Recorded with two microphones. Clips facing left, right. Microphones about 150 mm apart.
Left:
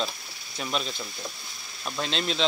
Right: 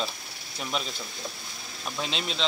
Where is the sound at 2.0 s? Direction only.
5° right (ahead or behind).